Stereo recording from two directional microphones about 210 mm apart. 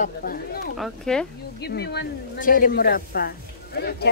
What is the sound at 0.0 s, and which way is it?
Speech, 45° left (ahead or behind).